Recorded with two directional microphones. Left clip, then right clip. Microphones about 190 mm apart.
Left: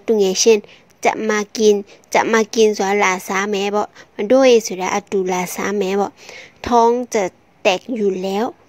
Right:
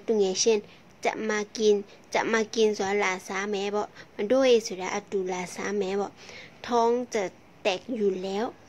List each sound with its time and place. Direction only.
0.0 s a woman's voice: 45° left (ahead or behind)